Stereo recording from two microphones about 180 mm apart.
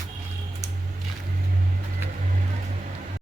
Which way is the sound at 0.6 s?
20° right (ahead or behind).